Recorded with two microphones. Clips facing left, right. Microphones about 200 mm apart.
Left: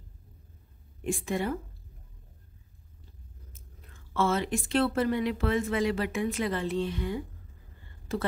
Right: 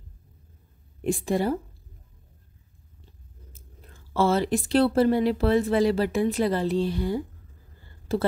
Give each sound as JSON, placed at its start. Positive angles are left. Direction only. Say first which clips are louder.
{"t": 1.0, "sound": "speech", "louder": "right 6 dB", "side_deg": -35}
{"t": 3.5, "sound": "speech", "louder": "right 3 dB", "side_deg": -35}
{"t": 7.8, "sound": "a sound", "louder": "right 6 dB", "side_deg": -35}